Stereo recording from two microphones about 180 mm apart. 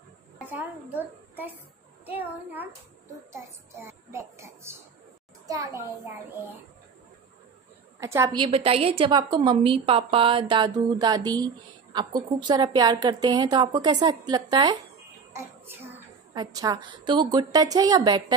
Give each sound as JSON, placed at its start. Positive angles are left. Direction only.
{"t": 0.4, "sound": "a child's voice", "side_deg": -10}
{"t": 8.0, "sound": "a child's voice", "side_deg": -15}
{"t": 8.4, "sound": "a woman's voice", "side_deg": -30}
{"t": 15.3, "sound": "child singing", "side_deg": -10}
{"t": 16.3, "sound": "a woman's voice", "side_deg": -20}